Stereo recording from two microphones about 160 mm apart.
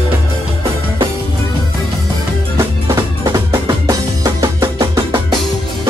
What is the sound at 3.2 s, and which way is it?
Music, 20° right (ahead or behind).